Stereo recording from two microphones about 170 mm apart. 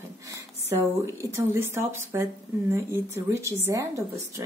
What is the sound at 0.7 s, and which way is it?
Speech, 20° right (ahead or behind).